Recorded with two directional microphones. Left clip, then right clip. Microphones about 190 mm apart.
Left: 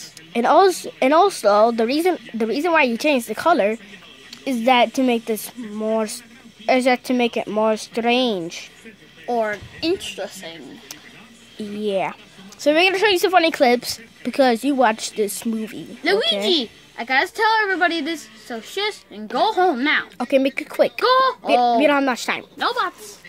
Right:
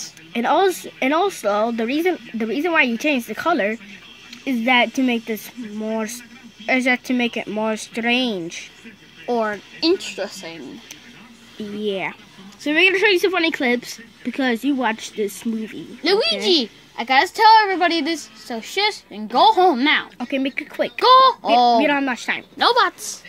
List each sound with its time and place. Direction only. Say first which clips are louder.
0.3 s speech: left 3 dB; 15° left (ahead or behind)
9.2 s a child's voice: even; 20° right (ahead or behind)
11.8 s speech: left 2 dB; 20° left (ahead or behind)
16.0 s a child's voice: even; 20° right (ahead or behind)
20.2 s speech: left 5 dB; 25° left (ahead or behind)
21.0 s a child's voice: right 9 dB; 25° right (ahead or behind)
21.8 s speech: left 2 dB; 20° left (ahead or behind)
22.6 s a woman's voice: right 7 dB; 50° right (ahead or behind)